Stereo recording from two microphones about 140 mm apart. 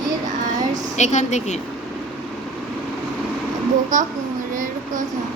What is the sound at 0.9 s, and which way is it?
Speech, 55° left (ahead or behind).